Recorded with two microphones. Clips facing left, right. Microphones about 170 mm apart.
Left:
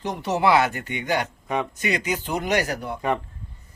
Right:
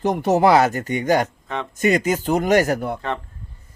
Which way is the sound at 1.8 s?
45° right (ahead or behind).